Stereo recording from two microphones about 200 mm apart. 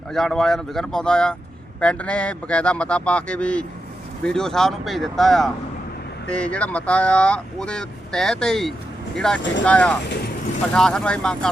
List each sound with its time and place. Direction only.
0.1 s speech: centre (ahead or behind)
10.1 s vehicle: 55° left (ahead or behind)
10.8 s speech: 5° left (ahead or behind)